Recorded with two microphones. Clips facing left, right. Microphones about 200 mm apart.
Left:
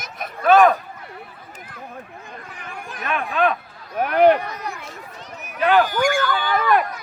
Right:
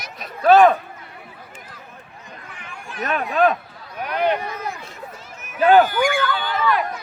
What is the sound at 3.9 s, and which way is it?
Speech, 50° left (ahead or behind).